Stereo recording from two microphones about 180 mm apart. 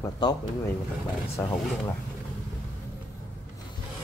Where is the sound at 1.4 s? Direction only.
10° left (ahead or behind).